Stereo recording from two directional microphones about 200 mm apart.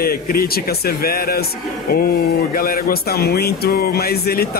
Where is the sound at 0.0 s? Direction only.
50° left (ahead or behind).